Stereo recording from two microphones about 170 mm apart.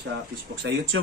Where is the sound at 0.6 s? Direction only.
90° right.